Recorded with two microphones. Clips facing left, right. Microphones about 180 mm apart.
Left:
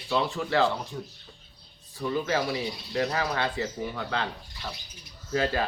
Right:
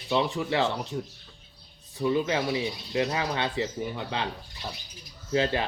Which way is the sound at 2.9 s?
20° right (ahead or behind).